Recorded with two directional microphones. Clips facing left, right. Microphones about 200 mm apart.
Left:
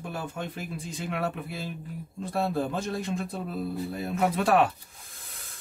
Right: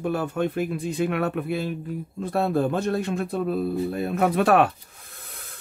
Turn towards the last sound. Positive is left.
turn(degrees=-60)  # may be behind; listen again after turning